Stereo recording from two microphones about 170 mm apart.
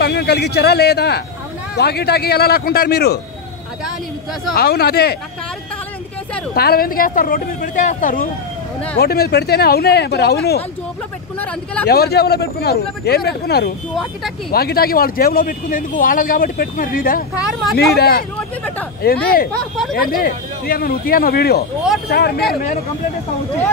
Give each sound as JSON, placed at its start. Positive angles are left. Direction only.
{"t": 0.0, "sound": "speech", "side_deg": 70}
{"t": 4.6, "sound": "speech", "side_deg": 65}
{"t": 6.5, "sound": "speech", "side_deg": 65}
{"t": 8.9, "sound": "speech", "side_deg": 70}
{"t": 11.3, "sound": "speech", "side_deg": 10}
{"t": 11.9, "sound": "speech", "side_deg": 70}